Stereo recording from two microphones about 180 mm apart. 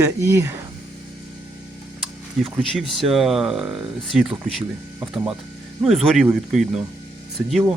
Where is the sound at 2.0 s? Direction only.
Centre (ahead or behind).